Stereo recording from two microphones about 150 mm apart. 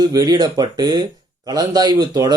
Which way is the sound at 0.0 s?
25° right (ahead or behind).